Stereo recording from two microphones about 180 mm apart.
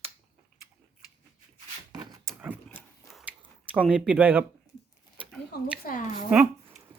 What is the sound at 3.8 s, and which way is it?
Speech, 5° right (ahead or behind).